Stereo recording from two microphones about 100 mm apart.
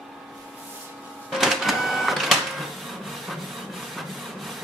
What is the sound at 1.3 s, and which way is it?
Printer, centre (ahead or behind).